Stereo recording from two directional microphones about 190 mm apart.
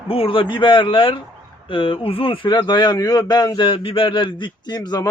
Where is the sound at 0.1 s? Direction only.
30° left (ahead or behind).